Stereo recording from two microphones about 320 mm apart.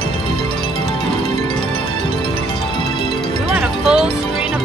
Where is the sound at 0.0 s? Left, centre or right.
Centre.